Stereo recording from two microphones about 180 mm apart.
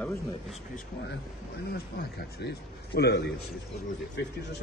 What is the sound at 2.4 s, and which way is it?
Speech, 70° left (ahead or behind).